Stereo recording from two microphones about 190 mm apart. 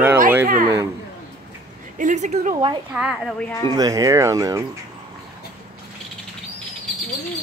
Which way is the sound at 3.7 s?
20° right (ahead or behind).